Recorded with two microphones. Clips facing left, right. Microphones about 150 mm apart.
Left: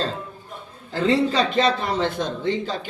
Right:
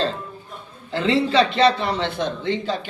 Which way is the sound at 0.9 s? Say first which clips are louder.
Right 1 dB; 40° left (ahead or behind).